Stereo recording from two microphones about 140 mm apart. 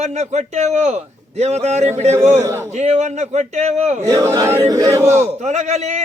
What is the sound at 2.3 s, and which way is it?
Speech, 20° right (ahead or behind).